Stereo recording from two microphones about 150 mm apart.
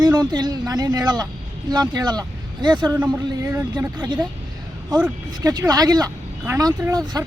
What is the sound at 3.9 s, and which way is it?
Speech, 30° right (ahead or behind).